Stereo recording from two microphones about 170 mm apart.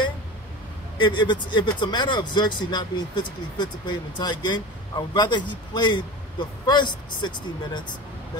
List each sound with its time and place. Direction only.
0.9 s speech: 25° left (ahead or behind)